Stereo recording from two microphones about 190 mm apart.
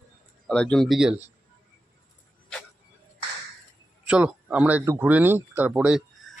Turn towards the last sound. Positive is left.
turn(degrees=-5)  # may be behind; listen again after turning